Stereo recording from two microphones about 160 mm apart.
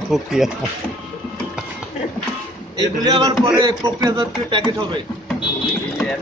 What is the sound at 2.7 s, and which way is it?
A man's voice, 25° right (ahead or behind).